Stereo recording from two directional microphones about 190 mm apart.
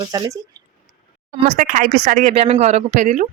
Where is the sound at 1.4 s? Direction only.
40° right (ahead or behind).